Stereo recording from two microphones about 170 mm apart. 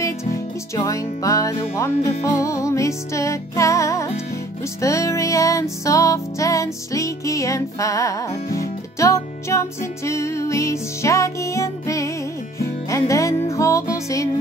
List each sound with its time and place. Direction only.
0.7 s music: 20° left (ahead or behind)